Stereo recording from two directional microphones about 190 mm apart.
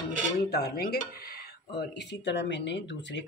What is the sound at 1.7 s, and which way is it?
Speech, 65° left (ahead or behind).